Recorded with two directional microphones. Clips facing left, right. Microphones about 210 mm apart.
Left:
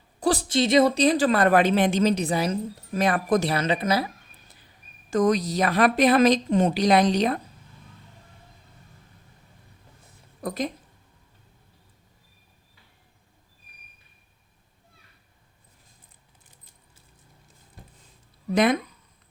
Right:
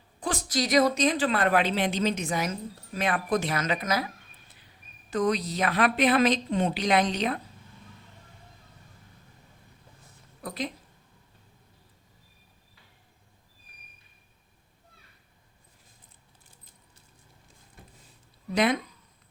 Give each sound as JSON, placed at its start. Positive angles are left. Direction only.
{"t": 0.2, "sound": "speech", "side_deg": 35}
{"t": 2.9, "sound": "speech", "side_deg": 45}
{"t": 3.5, "sound": "speech", "side_deg": 30}
{"t": 5.1, "sound": "speech", "side_deg": 45}
{"t": 10.4, "sound": "a woman's voice", "side_deg": 45}
{"t": 18.5, "sound": "speech", "side_deg": 50}